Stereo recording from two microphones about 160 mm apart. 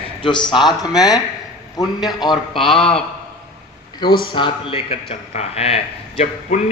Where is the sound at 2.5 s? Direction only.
5° left (ahead or behind).